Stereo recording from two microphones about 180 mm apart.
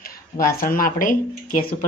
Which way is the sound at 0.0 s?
55° left (ahead or behind).